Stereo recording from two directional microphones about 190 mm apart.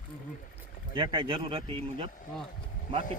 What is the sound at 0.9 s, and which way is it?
A man's voice, 25° right (ahead or behind).